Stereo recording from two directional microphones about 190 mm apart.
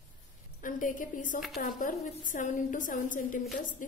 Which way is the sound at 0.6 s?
45° left (ahead or behind).